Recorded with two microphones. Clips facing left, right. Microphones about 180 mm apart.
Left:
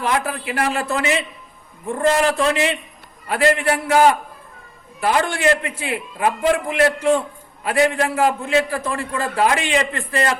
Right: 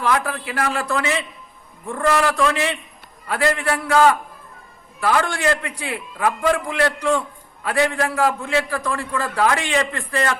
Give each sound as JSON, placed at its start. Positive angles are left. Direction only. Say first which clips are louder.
{"t": 0.0, "sound": "a man's voice", "louder": "even", "side_deg": 25}